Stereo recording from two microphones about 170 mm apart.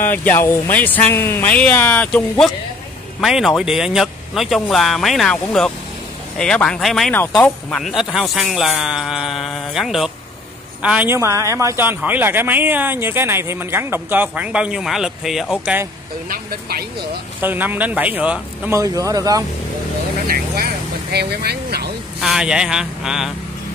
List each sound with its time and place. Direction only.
0.0 s a man's voice: 10° left (ahead or behind); by 15.8 s 5° right (ahead or behind)
16.3 s speech: 65° right (ahead or behind)
17.4 s a man's voice: 10° right (ahead or behind)
18.8 s speech: 20° right (ahead or behind)
20.2 s speech: 65° right (ahead or behind)
22.2 s speech: 5° right (ahead or behind)